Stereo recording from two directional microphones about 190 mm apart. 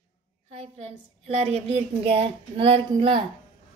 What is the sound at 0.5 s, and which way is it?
A woman's voice, 35° right (ahead or behind).